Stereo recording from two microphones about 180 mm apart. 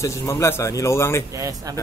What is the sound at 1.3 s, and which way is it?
Speech, 20° right (ahead or behind).